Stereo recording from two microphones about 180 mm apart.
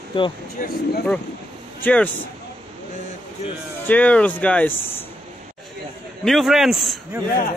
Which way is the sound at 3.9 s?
5° left (ahead or behind).